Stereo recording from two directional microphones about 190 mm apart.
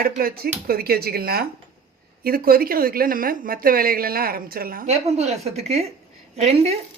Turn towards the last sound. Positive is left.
turn(degrees=-35)  # may be behind; listen again after turning